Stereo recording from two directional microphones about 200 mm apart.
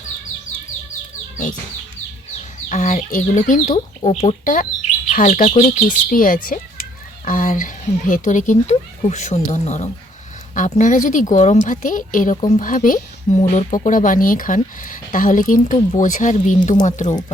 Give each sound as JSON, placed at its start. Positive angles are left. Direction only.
{"t": 2.6, "sound": "speech", "side_deg": 40}